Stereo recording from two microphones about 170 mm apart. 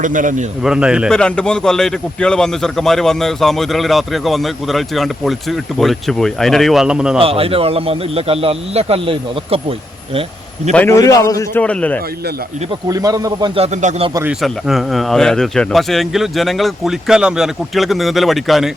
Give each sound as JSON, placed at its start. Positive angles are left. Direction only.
{"t": 0.0, "sound": "speech", "side_deg": -50}
{"t": 0.6, "sound": "a man's voice", "side_deg": -5}
{"t": 7.2, "sound": "a man's voice", "side_deg": -35}
{"t": 10.8, "sound": "a man's voice", "side_deg": 20}
{"t": 11.6, "sound": "a man's voice", "side_deg": 5}
{"t": 12.9, "sound": "speech", "side_deg": -20}
{"t": 13.6, "sound": "a man's voice", "side_deg": -35}
{"t": 14.3, "sound": "a man's voice", "side_deg": 0}